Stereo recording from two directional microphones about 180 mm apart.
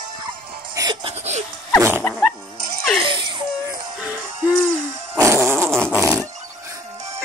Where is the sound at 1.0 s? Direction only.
35° right (ahead or behind).